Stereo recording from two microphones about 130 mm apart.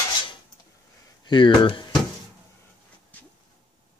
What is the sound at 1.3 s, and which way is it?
Speech, 40° left (ahead or behind).